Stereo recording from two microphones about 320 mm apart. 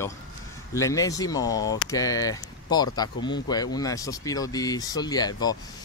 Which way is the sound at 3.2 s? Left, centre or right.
Left.